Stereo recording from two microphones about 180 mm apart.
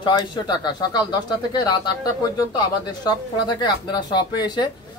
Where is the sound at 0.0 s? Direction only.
25° left (ahead or behind).